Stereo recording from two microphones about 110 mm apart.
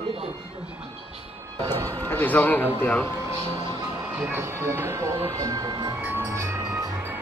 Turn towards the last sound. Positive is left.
turn(degrees=-25)  # may be behind; listen again after turning